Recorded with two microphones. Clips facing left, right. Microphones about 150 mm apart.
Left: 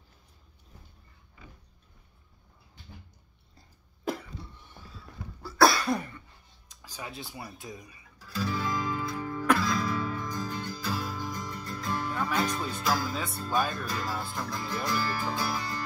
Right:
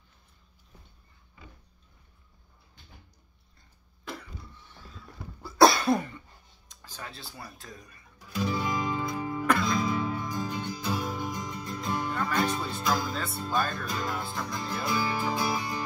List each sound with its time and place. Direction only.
3.5 s cough: 40° left (ahead or behind)
4.6 s mechanisms: 15° left (ahead or behind)
5.4 s cough: 20° right (ahead or behind)
6.7 s speech: 5° left (ahead or behind)
8.2 s music: 15° right (ahead or behind)
9.5 s music: 5° left (ahead or behind)
9.8 s music: 20° right (ahead or behind)
12.1 s music: 5° left (ahead or behind)
12.4 s music: 10° right (ahead or behind)
12.8 s speech: 5° left (ahead or behind)
13.5 s music: 10° left (ahead or behind)
14.5 s music: 15° right (ahead or behind)